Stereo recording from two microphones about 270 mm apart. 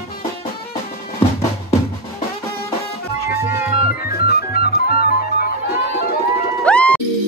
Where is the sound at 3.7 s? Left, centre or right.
Left.